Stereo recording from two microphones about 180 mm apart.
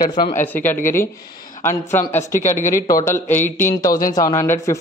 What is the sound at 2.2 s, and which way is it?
Speech, 45° left (ahead or behind).